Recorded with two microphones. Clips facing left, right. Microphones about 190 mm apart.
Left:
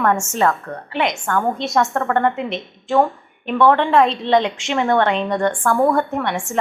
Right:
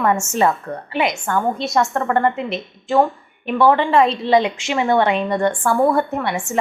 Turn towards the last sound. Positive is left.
turn(degrees=-5)  # may be behind; listen again after turning